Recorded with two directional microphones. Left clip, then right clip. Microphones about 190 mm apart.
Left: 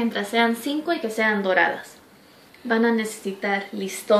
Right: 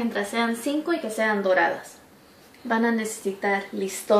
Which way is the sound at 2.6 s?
20° left (ahead or behind).